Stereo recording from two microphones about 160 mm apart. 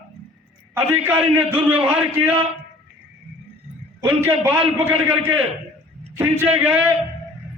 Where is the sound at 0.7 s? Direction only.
10° right (ahead or behind).